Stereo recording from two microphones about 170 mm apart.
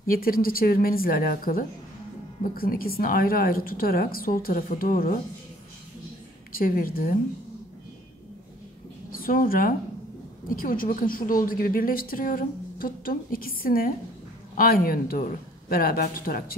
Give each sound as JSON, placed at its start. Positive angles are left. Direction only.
{"t": 0.0, "sound": "a woman's voice", "side_deg": 60}
{"t": 6.5, "sound": "a woman's voice", "side_deg": 55}
{"t": 9.1, "sound": "a woman's voice", "side_deg": 55}